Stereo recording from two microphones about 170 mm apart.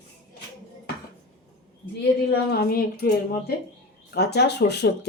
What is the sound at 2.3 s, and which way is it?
Speech, 65° left (ahead or behind).